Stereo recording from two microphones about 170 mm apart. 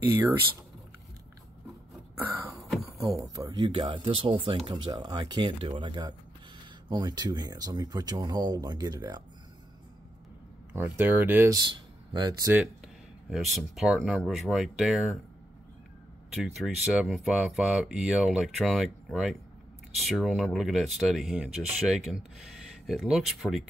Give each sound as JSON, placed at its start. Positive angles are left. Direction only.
{"t": 3.1, "sound": "speech", "side_deg": -20}
{"t": 10.7, "sound": "speech", "side_deg": -10}
{"t": 11.5, "sound": "speech", "side_deg": -25}
{"t": 12.4, "sound": "speech", "side_deg": -5}
{"t": 16.3, "sound": "speech", "side_deg": 0}